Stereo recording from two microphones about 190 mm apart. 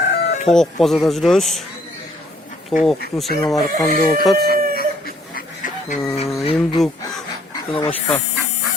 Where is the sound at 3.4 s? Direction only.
Centre (ahead or behind).